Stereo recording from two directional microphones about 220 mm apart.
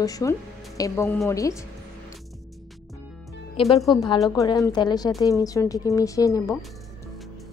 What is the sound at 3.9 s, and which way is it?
Speech, 15° left (ahead or behind).